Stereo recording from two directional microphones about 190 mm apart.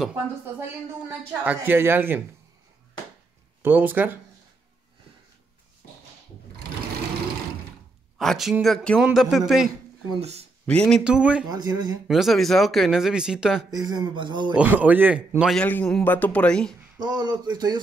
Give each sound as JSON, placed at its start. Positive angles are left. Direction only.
{"t": 0.0, "sound": "a woman's voice", "side_deg": -10}
{"t": 3.6, "sound": "a woman's voice", "side_deg": -10}
{"t": 8.2, "sound": "speech", "side_deg": 0}
{"t": 10.7, "sound": "speech", "side_deg": 5}
{"t": 11.4, "sound": "speech", "side_deg": -20}
{"t": 12.1, "sound": "speech", "side_deg": 0}
{"t": 13.7, "sound": "speech", "side_deg": -20}
{"t": 14.5, "sound": "a woman's voice", "side_deg": -5}
{"t": 15.6, "sound": "speech", "side_deg": 10}
{"t": 17.0, "sound": "speech", "side_deg": -20}